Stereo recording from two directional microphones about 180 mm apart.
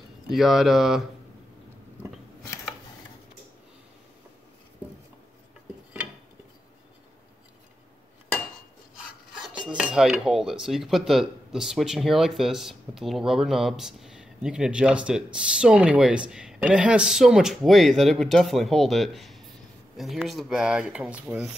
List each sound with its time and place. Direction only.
0.3 s filing: centre (ahead or behind)
8.9 s filing: 5° right (ahead or behind)